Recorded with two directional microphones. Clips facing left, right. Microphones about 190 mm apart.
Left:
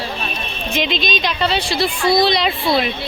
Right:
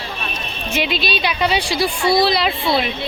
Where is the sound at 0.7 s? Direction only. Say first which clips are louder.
Even; 10° right (ahead or behind).